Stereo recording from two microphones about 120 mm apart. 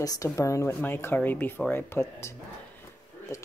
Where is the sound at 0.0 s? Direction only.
30° left (ahead or behind).